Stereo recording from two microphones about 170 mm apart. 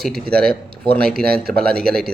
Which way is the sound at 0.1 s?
65° right (ahead or behind).